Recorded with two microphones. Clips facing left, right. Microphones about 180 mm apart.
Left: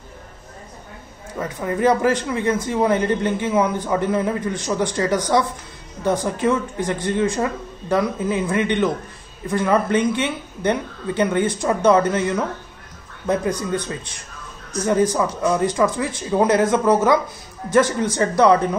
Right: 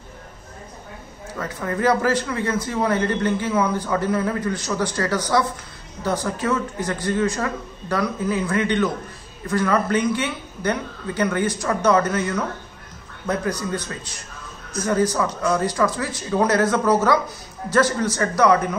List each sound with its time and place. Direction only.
1.4 s a man's voice: 20° left (ahead or behind)